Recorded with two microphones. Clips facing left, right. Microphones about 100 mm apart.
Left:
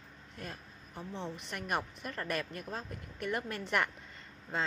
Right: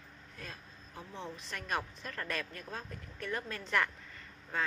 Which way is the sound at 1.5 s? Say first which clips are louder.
Left 1 dB; 15° left (ahead or behind).